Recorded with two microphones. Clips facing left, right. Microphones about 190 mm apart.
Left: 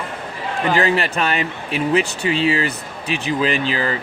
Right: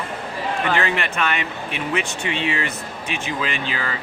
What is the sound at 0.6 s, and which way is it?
Speech, 35° left (ahead or behind).